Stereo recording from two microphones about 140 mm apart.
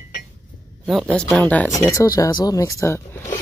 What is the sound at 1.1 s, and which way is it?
Speech, 10° left (ahead or behind).